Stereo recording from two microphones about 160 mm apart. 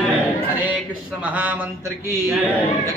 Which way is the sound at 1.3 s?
10° right (ahead or behind).